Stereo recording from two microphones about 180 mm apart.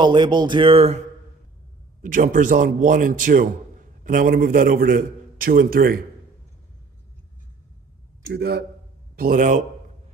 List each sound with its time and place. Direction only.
0.0 s speech: 25° right (ahead or behind)
2.0 s a man's voice: 50° right (ahead or behind)
8.3 s speech: 65° right (ahead or behind)
9.1 s a man's voice: 50° right (ahead or behind)